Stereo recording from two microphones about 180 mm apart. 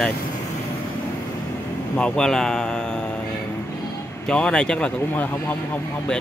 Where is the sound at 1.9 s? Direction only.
5° left (ahead or behind).